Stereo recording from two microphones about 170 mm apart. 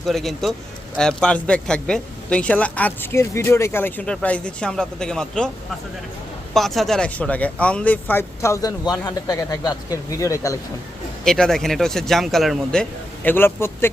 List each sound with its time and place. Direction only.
0.0 s speech: centre (ahead or behind)
6.5 s speech: centre (ahead or behind); by 10.6 s 20° left (ahead or behind)
11.2 s speech: 5° left (ahead or behind)